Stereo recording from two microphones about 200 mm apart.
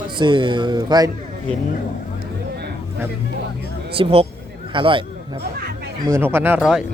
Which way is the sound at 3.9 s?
30° right (ahead or behind).